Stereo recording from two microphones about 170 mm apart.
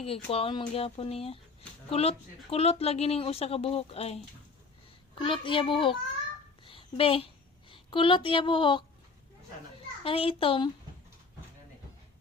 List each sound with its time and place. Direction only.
0.0 s a child's voice: 35° left (ahead or behind)
6.7 s a sound: 30° left (ahead or behind)
7.7 s speech: 30° left (ahead or behind)
10.0 s speech: 35° left (ahead or behind)